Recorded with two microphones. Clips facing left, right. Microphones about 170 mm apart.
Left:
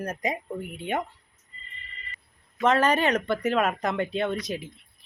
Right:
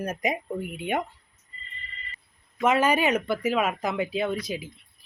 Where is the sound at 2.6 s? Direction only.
10° right (ahead or behind).